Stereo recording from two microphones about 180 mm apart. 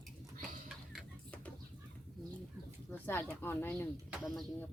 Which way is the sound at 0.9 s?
Centre (ahead or behind).